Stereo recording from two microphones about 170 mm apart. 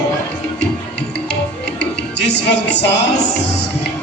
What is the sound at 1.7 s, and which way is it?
Music, 90° left.